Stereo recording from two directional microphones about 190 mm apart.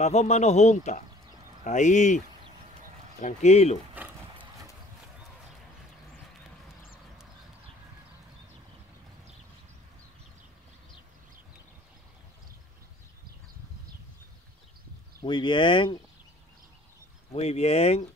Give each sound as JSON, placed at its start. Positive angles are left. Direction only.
{"t": 0.0, "sound": "speech", "side_deg": 35}
{"t": 4.0, "sound": "horse", "side_deg": -10}
{"t": 15.1, "sound": "speech", "side_deg": 25}
{"t": 17.3, "sound": "speech", "side_deg": 35}